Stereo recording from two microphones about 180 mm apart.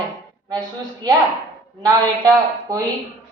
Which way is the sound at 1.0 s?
20° right (ahead or behind).